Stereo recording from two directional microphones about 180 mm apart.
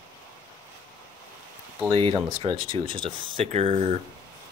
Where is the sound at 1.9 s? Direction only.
30° right (ahead or behind).